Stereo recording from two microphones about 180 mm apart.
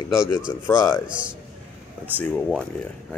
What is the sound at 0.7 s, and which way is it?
Speech, 15° left (ahead or behind).